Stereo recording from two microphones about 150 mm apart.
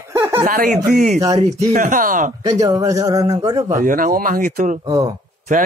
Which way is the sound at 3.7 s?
65° right (ahead or behind).